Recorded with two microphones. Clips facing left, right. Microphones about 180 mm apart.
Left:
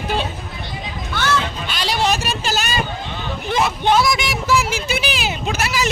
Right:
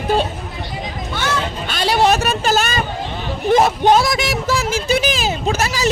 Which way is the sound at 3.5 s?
45° right (ahead or behind).